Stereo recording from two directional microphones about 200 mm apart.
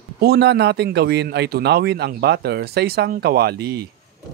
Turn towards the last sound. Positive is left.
turn(degrees=-55)  # may be behind; listen again after turning